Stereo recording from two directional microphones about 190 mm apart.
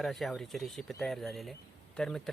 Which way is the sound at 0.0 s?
Centre (ahead or behind).